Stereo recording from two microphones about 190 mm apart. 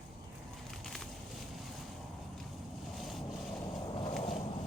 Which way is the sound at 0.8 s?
Centre (ahead or behind).